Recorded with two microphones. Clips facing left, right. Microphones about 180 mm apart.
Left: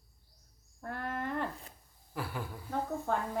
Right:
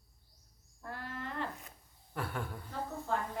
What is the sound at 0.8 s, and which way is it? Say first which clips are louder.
Wild animals: left 6 dB; 55° left (ahead or behind).